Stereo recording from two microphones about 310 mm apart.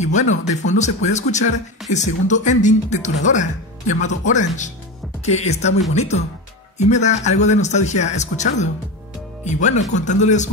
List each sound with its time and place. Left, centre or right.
0.0 s speech: left